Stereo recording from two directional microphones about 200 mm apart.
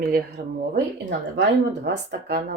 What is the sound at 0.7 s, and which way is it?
Speech, 60° right (ahead or behind).